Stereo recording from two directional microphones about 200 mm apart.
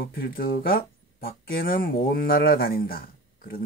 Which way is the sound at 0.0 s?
50° left (ahead or behind).